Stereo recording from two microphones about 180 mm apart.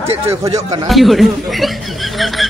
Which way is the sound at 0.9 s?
Centre (ahead or behind).